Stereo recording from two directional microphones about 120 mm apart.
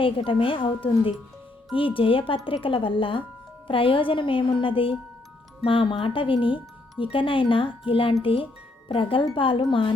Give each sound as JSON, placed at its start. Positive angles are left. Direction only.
{"t": 0.0, "sound": "speech", "side_deg": 45}